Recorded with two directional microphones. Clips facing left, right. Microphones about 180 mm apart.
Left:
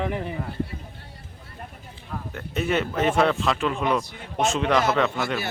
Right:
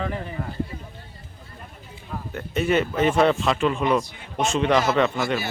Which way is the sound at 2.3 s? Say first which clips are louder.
Right 3 dB; centre (ahead or behind).